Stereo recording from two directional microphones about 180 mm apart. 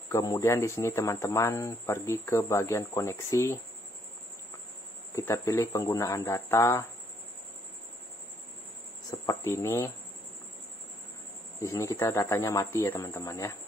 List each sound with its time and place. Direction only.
0.2 s speech: 20° left (ahead or behind)
5.3 s speech: 15° left (ahead or behind)
9.1 s a sound: 25° left (ahead or behind)
9.4 s speech: 15° left (ahead or behind)
11.6 s speech: 15° left (ahead or behind)